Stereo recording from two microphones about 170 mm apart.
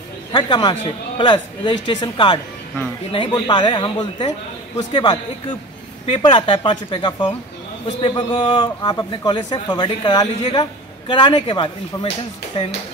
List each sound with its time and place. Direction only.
0.3 s a man's voice: 25° left (ahead or behind)